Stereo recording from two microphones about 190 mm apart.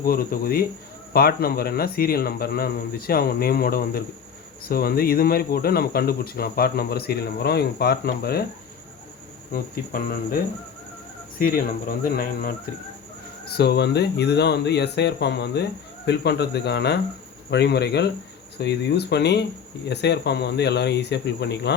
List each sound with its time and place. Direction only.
0.0 s speech: 50° left (ahead or behind)
9.5 s speech: 50° left (ahead or behind)